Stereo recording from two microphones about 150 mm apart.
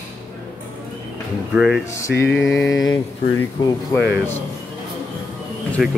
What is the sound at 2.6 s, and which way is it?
Mantra, 25° left (ahead or behind).